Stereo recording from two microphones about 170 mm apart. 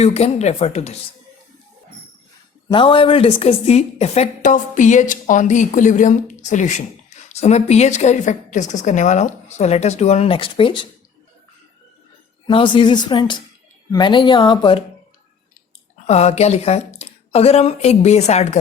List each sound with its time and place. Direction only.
0.0 s speech: 40° left (ahead or behind)
2.6 s a woman's voice: 30° left (ahead or behind)
12.5 s speech: 30° left (ahead or behind)
16.0 s speech: 40° left (ahead or behind)